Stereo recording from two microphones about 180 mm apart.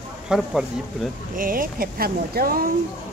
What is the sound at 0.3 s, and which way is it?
Speech, 5° right (ahead or behind).